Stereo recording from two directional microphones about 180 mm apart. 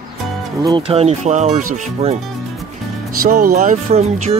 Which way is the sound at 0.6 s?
30° right (ahead or behind).